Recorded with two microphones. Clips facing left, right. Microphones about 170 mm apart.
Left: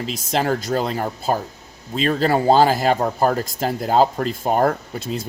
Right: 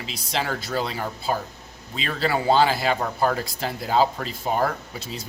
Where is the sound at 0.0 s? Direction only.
45° left (ahead or behind).